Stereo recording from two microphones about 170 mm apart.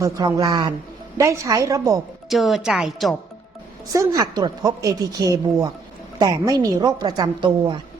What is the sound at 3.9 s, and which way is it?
A woman's voice, 20° right (ahead or behind).